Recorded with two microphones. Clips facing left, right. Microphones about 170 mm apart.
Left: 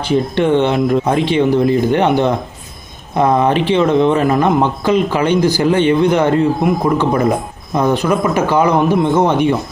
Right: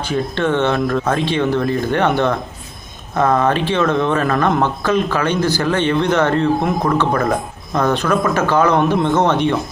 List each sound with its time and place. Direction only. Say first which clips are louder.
0.1 s speech: left 5 dB; 15° left (ahead or behind)